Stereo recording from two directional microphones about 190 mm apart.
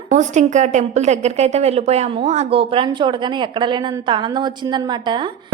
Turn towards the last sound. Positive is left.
turn(degrees=-25)  # may be behind; listen again after turning